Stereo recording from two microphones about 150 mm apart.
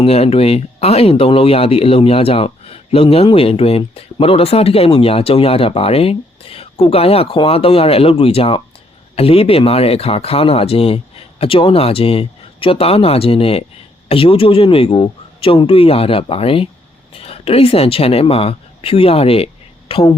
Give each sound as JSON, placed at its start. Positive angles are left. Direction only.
{"t": 0.0, "sound": "a woman's voice", "side_deg": 40}